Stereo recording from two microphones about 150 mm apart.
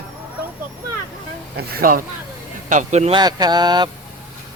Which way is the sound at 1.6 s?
90° right.